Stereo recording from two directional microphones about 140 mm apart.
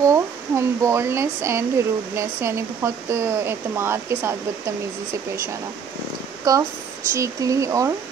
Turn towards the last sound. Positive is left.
turn(degrees=-20)  # may be behind; listen again after turning